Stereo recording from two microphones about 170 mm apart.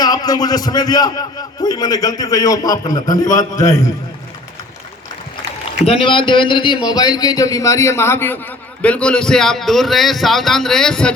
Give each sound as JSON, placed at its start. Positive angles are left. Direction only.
{"t": 0.0, "sound": "a man's voice", "side_deg": 20}
{"t": 5.8, "sound": "a man's voice", "side_deg": 35}